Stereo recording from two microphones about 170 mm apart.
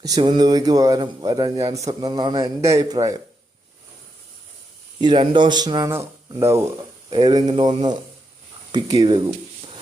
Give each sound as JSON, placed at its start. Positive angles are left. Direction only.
{"t": 0.0, "sound": "a man's voice", "side_deg": -25}
{"t": 4.9, "sound": "a man's voice", "side_deg": -25}
{"t": 7.1, "sound": "a man's voice", "side_deg": -25}